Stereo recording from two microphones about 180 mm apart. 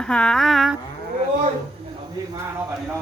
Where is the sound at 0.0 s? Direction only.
5° left (ahead or behind).